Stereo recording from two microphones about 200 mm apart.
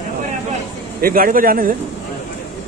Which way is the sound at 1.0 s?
45° right (ahead or behind).